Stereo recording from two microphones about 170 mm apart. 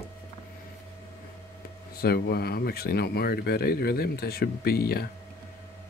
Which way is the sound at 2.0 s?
65° left (ahead or behind).